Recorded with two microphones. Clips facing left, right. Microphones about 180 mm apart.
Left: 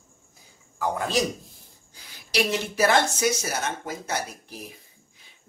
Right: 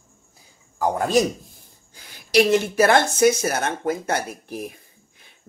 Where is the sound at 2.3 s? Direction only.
55° right (ahead or behind).